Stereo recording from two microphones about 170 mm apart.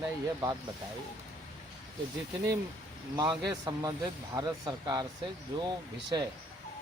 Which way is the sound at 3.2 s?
25° right (ahead or behind).